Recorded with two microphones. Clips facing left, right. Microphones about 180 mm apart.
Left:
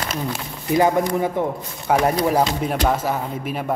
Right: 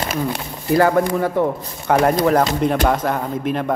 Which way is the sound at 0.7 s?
15° left (ahead or behind).